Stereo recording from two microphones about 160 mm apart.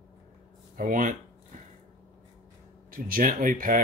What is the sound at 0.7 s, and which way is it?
Speech, 55° right (ahead or behind).